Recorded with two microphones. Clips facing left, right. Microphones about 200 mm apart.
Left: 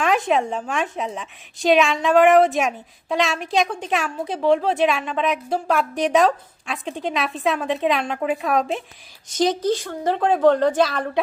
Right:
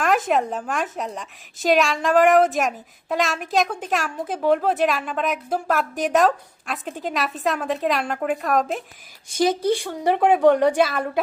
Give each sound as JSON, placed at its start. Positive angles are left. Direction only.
{"t": 0.0, "sound": "a woman's voice", "side_deg": 0}
{"t": 9.7, "sound": "a woman's voice", "side_deg": -15}